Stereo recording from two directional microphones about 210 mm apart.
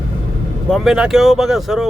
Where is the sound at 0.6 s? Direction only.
Centre (ahead or behind).